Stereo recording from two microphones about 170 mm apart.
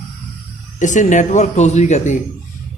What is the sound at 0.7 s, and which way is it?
Speech, 45° left (ahead or behind).